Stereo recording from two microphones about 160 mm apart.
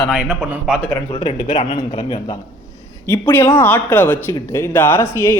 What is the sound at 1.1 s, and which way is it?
Speech, 35° left (ahead or behind).